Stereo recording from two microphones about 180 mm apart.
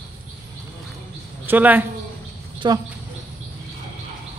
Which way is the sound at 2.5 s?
25° right (ahead or behind).